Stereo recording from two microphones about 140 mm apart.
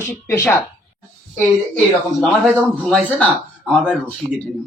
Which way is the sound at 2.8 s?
5° left (ahead or behind).